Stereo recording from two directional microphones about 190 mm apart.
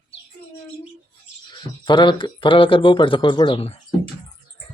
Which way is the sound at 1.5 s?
25° left (ahead or behind).